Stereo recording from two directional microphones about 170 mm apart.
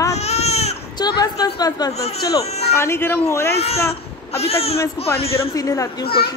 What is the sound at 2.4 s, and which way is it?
Music, 40° left (ahead or behind).